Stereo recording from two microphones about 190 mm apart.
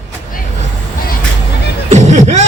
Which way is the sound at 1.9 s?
35° right (ahead or behind).